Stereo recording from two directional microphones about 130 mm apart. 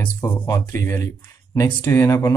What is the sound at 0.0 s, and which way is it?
Speech, 20° left (ahead or behind).